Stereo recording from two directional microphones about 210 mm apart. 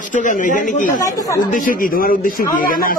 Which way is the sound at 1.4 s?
40° left (ahead or behind).